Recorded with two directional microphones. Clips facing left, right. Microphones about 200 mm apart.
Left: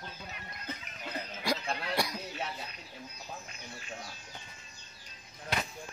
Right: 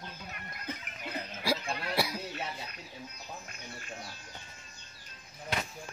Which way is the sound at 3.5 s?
50° right (ahead or behind).